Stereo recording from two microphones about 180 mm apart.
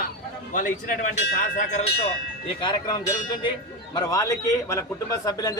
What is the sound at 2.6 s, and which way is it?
A man's voice, 25° left (ahead or behind).